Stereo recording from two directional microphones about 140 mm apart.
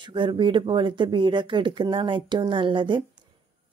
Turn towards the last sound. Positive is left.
turn(degrees=-35)  # may be behind; listen again after turning